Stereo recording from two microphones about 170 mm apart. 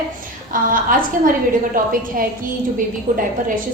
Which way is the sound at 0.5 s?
55° right (ahead or behind).